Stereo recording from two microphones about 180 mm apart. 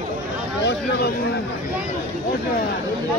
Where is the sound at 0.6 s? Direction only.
65° left (ahead or behind).